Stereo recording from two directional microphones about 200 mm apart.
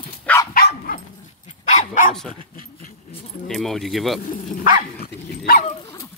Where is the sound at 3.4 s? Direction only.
Centre (ahead or behind).